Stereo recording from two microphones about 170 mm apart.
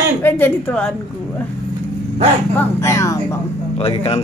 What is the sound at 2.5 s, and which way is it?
Speech, 15° left (ahead or behind).